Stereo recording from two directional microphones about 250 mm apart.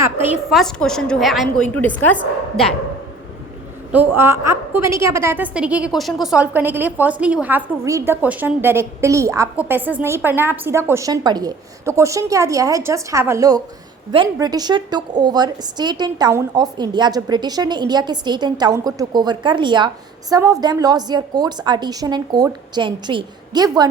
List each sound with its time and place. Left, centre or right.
0.3 s a woman's voice: centre
3.9 s a woman's voice: centre